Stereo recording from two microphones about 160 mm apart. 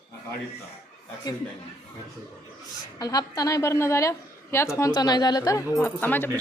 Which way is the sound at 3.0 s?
25° left (ahead or behind).